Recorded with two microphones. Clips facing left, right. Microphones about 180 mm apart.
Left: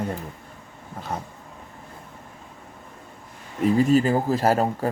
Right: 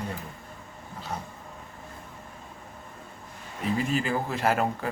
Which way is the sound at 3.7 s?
40° left (ahead or behind).